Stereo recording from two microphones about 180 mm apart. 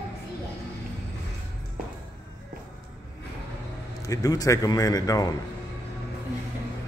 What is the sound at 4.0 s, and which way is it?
A man's voice, 20° left (ahead or behind).